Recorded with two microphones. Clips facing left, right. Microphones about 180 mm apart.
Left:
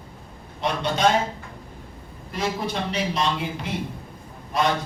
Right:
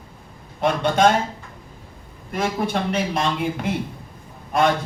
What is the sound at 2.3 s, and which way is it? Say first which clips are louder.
Speech: right 4 dB; 55° right (ahead or behind).